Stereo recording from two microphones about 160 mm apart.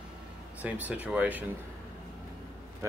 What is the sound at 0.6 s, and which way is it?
Speech, 10° right (ahead or behind).